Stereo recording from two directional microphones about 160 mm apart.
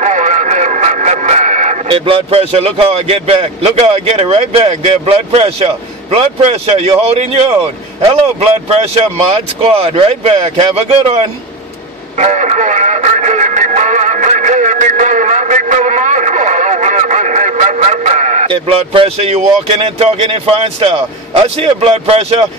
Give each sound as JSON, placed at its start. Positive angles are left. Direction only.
{"t": 0.0, "sound": "vehicle", "side_deg": -50}
{"t": 1.9, "sound": "speech", "side_deg": -35}
{"t": 12.2, "sound": "music", "side_deg": -50}